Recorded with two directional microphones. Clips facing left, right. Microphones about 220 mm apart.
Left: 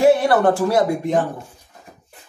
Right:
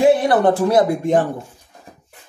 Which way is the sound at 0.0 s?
15° right (ahead or behind).